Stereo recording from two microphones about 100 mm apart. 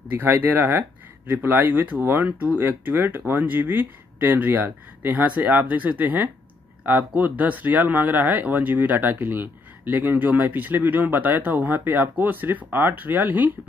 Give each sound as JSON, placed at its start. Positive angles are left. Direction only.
{"t": 0.1, "sound": "speech", "side_deg": -20}